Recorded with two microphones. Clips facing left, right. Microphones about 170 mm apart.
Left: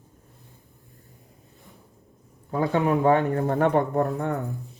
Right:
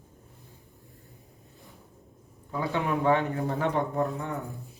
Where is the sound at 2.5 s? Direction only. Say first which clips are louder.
Left 6 dB; 50° left (ahead or behind).